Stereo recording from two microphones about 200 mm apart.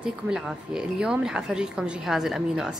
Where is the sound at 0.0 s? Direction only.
5° right (ahead or behind).